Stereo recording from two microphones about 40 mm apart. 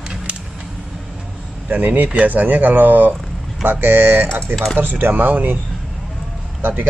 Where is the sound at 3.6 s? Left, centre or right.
Right.